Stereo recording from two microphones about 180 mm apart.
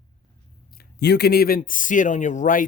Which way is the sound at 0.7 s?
65° left (ahead or behind).